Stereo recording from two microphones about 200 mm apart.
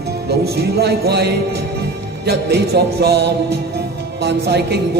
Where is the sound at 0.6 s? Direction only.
55° right (ahead or behind).